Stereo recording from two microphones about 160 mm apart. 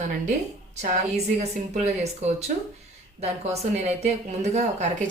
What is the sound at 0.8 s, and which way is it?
Speech, 45° right (ahead or behind).